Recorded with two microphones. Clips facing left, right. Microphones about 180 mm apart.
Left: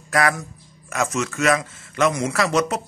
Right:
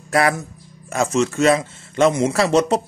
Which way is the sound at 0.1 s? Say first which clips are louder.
Right 3 dB; 30° right (ahead or behind).